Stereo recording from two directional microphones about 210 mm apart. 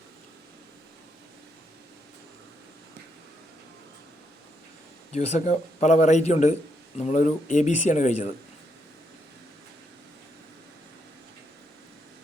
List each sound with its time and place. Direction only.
5.1 s speech: 30° left (ahead or behind)